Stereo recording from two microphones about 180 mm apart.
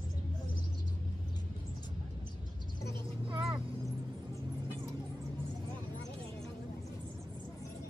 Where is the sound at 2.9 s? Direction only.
25° right (ahead or behind).